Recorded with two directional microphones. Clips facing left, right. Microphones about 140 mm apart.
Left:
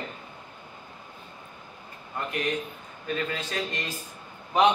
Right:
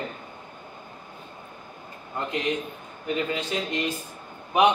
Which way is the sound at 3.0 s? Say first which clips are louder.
Right 3 dB; 20° right (ahead or behind).